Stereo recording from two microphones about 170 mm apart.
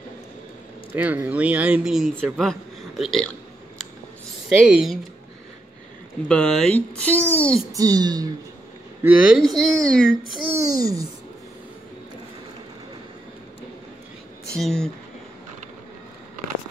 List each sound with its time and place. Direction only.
0.9 s speech: 10° right (ahead or behind)
3.0 s a sound: centre (ahead or behind)
4.6 s speech: 5° right (ahead or behind)
6.2 s a child's voice: 5° left (ahead or behind)
7.7 s speech: 20° right (ahead or behind)
9.0 s a child's voice: 5° right (ahead or behind)
10.5 s a child's voice: 20° right (ahead or behind)
14.5 s a child's voice: 5° left (ahead or behind)